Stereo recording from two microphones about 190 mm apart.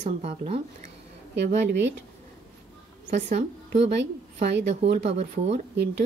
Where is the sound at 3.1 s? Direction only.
40° right (ahead or behind).